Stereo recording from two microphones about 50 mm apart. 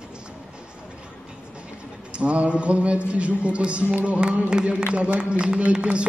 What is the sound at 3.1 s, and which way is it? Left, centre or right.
A man's voice, right.